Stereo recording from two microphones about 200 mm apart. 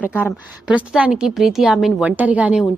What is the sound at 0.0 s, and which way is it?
A woman's voice, 5° right (ahead or behind).